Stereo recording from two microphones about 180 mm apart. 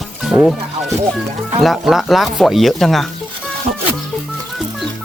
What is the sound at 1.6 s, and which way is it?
Speech, centre (ahead or behind).